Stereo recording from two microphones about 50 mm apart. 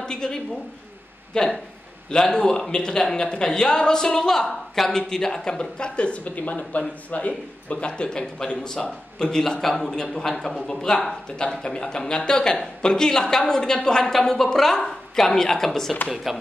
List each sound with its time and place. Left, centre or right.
0.0 s a woman's voice: centre
16.3 s speech: centre